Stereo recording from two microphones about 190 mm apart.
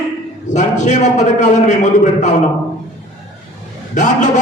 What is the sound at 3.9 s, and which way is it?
Speech, 40° left (ahead or behind).